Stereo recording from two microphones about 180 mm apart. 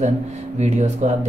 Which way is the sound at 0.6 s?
40° right (ahead or behind).